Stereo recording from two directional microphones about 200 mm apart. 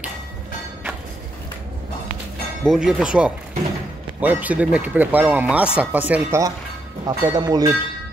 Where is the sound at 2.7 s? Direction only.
Centre (ahead or behind).